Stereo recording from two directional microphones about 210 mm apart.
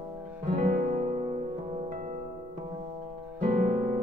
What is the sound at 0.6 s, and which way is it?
Music, 40° right (ahead or behind).